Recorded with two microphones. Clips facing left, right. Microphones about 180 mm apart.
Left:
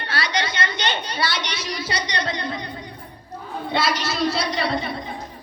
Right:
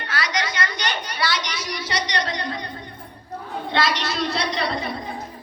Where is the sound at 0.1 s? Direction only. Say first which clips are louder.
Left 1 dB; 30° left (ahead or behind).